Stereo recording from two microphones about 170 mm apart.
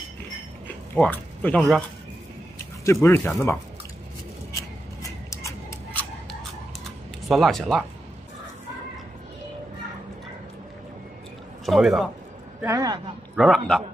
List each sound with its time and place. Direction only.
0.7 s a sound: 10° left (ahead or behind)
2.8 s speech: 15° left (ahead or behind)
4.5 s a sound: 20° left (ahead or behind)
7.2 s speech: centre (ahead or behind)
11.6 s speech: centre (ahead or behind)
12.6 s speech: 20° right (ahead or behind)
13.4 s speech: centre (ahead or behind)